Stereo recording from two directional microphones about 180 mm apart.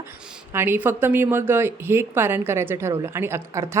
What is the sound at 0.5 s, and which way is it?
A woman's voice, 10° right (ahead or behind).